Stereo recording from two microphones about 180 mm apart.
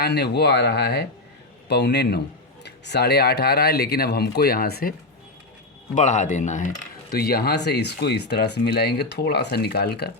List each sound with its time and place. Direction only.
0.0 s speech: 65° left (ahead or behind)
5.9 s speech: 40° left (ahead or behind); by 10.1 s 65° left (ahead or behind)